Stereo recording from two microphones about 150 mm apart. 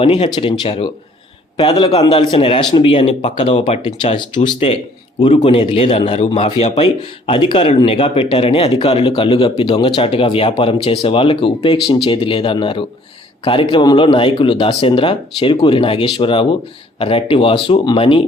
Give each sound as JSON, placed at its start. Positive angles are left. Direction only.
{"t": 0.0, "sound": "speech", "side_deg": 40}